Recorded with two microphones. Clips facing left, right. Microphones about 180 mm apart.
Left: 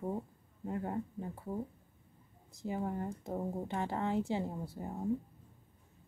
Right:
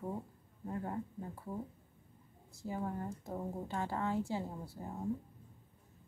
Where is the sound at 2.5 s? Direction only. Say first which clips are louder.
Left 3 dB; 20° left (ahead or behind).